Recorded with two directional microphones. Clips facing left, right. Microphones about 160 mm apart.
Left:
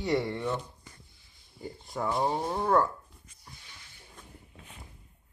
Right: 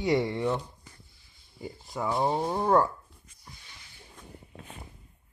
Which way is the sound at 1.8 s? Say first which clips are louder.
Even; centre (ahead or behind).